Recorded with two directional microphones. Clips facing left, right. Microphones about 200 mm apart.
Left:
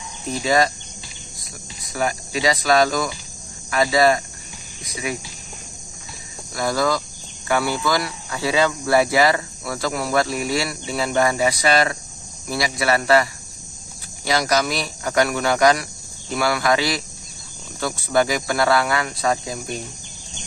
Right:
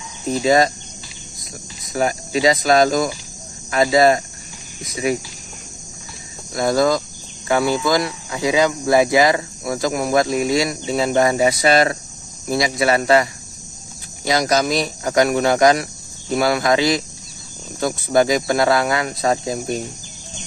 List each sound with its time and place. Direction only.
0.4 s speech: 25° right (ahead or behind)
1.9 s speech: 30° right (ahead or behind)
6.5 s speech: 25° right (ahead or behind)